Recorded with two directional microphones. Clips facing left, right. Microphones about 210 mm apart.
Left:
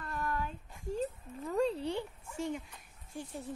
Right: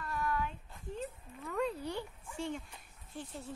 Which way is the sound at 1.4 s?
30° left (ahead or behind).